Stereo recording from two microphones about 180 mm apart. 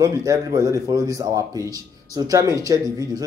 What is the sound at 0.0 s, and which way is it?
Speech, 20° right (ahead or behind).